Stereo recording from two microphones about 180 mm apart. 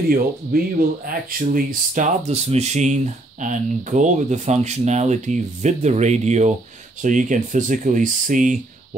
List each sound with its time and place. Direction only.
0.1 s speech: 50° right (ahead or behind)